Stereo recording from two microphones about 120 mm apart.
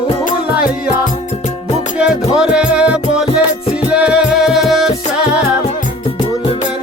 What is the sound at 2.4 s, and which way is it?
Music, 5° right (ahead or behind).